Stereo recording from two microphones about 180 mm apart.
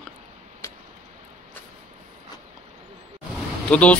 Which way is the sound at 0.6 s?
15° left (ahead or behind).